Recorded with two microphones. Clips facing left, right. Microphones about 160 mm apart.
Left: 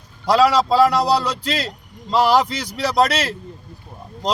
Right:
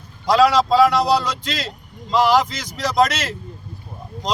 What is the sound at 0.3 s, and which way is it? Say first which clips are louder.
Speech: even; 35° left (ahead or behind).